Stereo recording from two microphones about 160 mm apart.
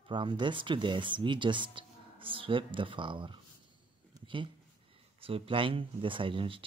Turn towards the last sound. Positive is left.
turn(degrees=-35)  # may be behind; listen again after turning